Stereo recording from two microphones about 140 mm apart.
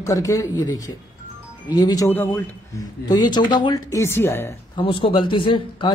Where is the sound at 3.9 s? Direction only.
20° left (ahead or behind).